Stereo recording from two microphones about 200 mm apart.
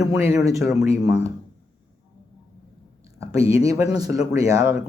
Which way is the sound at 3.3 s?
30° left (ahead or behind).